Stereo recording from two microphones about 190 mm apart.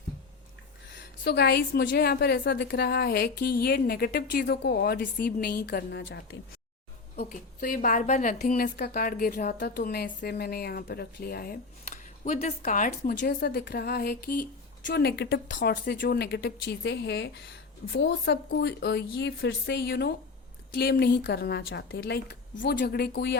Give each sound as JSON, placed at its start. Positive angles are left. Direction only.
{"t": 0.9, "sound": "a woman's voice", "side_deg": 60}
{"t": 7.3, "sound": "a woman's voice", "side_deg": 45}